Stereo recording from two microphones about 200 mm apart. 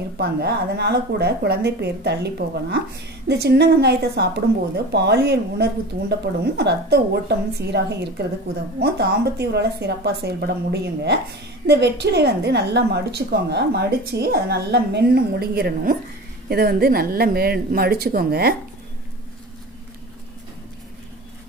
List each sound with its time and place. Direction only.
0.2 s a woman's voice: 55° right (ahead or behind)